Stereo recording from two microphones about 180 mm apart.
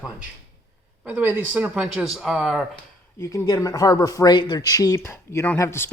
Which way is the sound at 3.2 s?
15° left (ahead or behind).